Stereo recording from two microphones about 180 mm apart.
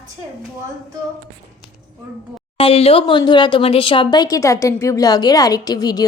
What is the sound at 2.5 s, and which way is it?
Speech, 30° left (ahead or behind).